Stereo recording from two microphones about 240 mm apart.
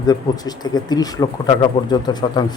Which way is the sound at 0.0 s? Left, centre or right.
Centre.